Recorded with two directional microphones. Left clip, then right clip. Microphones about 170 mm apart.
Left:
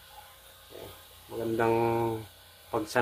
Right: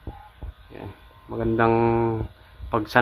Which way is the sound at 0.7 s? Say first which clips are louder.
Right 6 dB; 40° right (ahead or behind).